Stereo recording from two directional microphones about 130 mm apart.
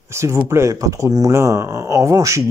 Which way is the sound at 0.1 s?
20° right (ahead or behind).